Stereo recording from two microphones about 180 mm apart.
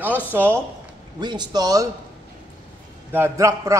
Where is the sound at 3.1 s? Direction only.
15° right (ahead or behind).